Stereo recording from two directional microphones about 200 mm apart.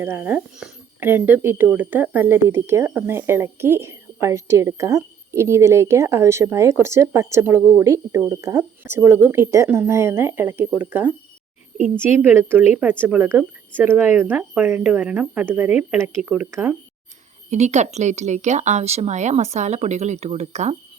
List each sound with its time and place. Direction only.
0.0 s speech: 10° right (ahead or behind)
17.5 s speech: 35° right (ahead or behind)